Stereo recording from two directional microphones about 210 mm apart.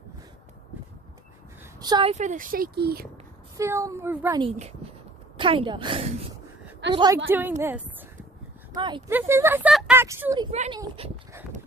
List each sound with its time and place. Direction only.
1.8 s a child's voice: 20° right (ahead or behind); by 3.1 s 50° right (ahead or behind)
3.5 s speech: 15° right (ahead or behind)
4.4 s a woman's voice: 30° right (ahead or behind)
7.2 s speech: 10° right (ahead or behind)
8.7 s speech: 20° right (ahead or behind)
9.1 s speech: 10° right (ahead or behind)
10.5 s a child's voice: 30° right (ahead or behind)